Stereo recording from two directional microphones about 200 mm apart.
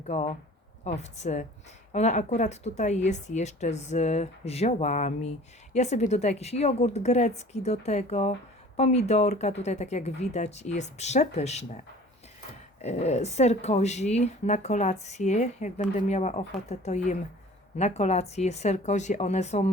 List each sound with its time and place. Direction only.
0.0 s a woman's voice: 35° left (ahead or behind)
12.8 s a woman's voice: 35° left (ahead or behind)